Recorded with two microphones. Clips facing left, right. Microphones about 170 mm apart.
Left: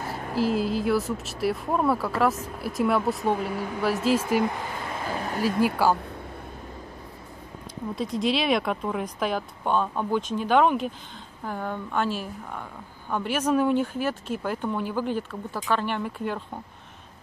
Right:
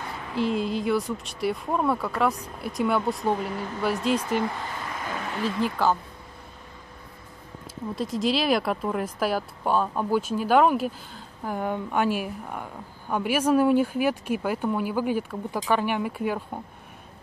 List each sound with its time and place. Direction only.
0.4 s speech: centre (ahead or behind)
5.1 s a sound: 35° left (ahead or behind)
5.6 s speech: 10° left (ahead or behind)
7.9 s speech: centre (ahead or behind)